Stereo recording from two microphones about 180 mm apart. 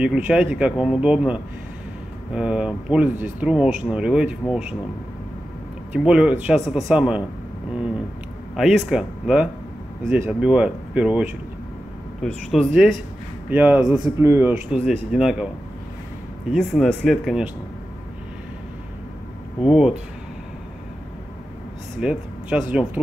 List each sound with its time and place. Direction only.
0.0 s speech: 5° right (ahead or behind)
5.9 s speech: 5° right (ahead or behind)
8.5 s speech: centre (ahead or behind)
14.2 s speech: 15° right (ahead or behind)
14.7 s speech: 5° right (ahead or behind)
16.5 s speech: centre (ahead or behind)
19.6 s speech: 5° right (ahead or behind)
22.0 s speech: 5° right (ahead or behind)